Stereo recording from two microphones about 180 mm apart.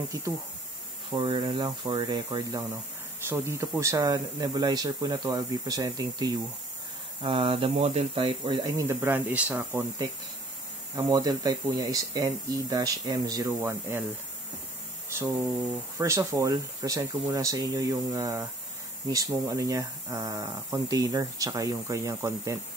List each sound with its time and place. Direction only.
1.1 s speech: 25° right (ahead or behind); by 9.8 s 10° right (ahead or behind)
11.0 s speech: 20° right (ahead or behind)
16.0 s speech: 15° right (ahead or behind)